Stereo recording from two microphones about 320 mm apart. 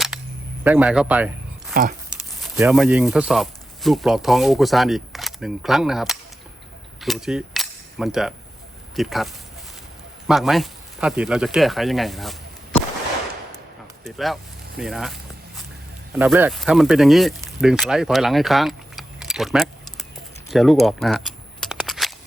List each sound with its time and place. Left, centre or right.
0.6 s speech: centre
1.7 s a sound: right
2.1 s speech: centre
7.0 s cutlery: centre
9.0 s speech: centre
14.0 s speech: centre
14.8 s a sound: centre
16.1 s speech: centre
20.5 s a sound: centre